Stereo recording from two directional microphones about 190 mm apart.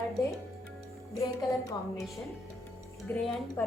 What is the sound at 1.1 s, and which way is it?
Speech, 20° left (ahead or behind).